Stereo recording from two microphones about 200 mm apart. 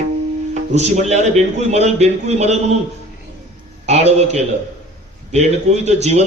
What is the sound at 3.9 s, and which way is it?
Mantra, 35° right (ahead or behind).